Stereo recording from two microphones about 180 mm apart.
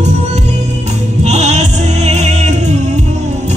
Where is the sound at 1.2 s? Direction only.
40° right (ahead or behind).